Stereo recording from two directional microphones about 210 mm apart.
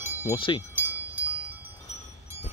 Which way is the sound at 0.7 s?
5° right (ahead or behind).